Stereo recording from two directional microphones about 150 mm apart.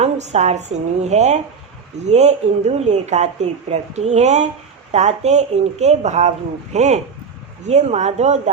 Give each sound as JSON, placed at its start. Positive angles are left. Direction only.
{"t": 0.0, "sound": "speech", "side_deg": -50}